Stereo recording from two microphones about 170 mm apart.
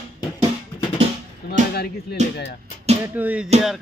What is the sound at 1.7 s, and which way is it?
Speech, 70° left (ahead or behind).